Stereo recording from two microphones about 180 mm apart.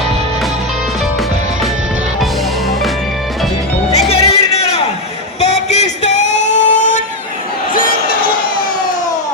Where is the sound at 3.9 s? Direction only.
35° left (ahead or behind).